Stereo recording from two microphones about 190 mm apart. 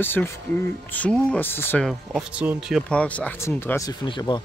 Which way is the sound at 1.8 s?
5° right (ahead or behind).